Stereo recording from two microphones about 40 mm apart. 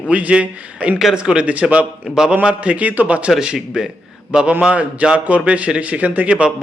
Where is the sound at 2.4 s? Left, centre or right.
Right.